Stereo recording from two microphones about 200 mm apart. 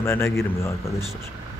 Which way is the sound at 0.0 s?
10° left (ahead or behind).